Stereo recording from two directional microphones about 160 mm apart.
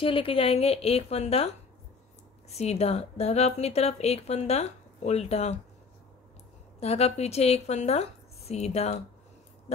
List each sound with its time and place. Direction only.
0.0 s speech: 35° left (ahead or behind)
2.5 s speech: 40° left (ahead or behind)
6.8 s speech: 40° left (ahead or behind)